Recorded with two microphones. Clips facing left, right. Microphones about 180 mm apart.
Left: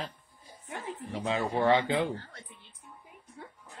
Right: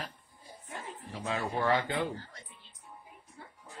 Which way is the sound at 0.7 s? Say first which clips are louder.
Left 5 dB; 70° left (ahead or behind).